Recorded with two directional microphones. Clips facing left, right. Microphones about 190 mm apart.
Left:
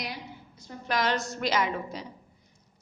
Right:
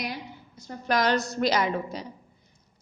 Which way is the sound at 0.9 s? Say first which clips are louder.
Right 4 dB; 40° right (ahead or behind).